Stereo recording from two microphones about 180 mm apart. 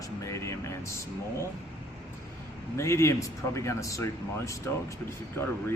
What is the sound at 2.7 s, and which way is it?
Speech, 15° left (ahead or behind).